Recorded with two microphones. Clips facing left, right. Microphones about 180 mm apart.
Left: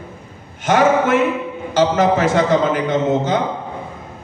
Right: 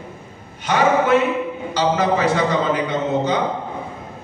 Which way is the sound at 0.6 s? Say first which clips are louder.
Left 3 dB; 50° left (ahead or behind).